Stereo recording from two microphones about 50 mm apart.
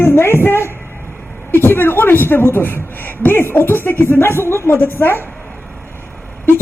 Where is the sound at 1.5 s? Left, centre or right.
Left.